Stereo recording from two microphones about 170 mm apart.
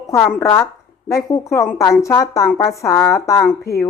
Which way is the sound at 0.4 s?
15° left (ahead or behind).